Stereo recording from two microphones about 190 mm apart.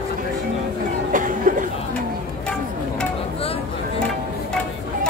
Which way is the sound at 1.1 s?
45° right (ahead or behind).